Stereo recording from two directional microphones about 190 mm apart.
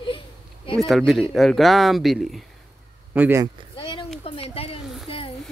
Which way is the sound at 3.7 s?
25° left (ahead or behind).